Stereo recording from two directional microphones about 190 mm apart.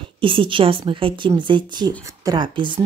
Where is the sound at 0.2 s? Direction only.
25° right (ahead or behind).